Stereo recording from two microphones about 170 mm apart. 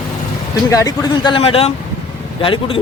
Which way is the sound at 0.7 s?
20° left (ahead or behind).